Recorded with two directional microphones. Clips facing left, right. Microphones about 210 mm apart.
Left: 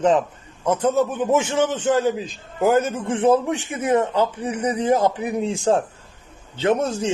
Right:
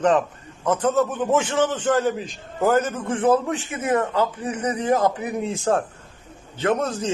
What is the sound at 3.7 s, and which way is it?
A man's voice, 25° left (ahead or behind).